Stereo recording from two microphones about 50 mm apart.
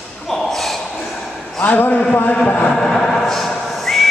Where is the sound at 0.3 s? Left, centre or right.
Centre.